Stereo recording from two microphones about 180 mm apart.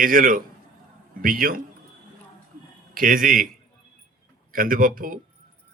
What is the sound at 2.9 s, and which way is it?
Speech, 50° right (ahead or behind).